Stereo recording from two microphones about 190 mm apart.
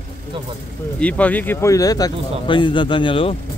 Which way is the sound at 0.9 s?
5° left (ahead or behind).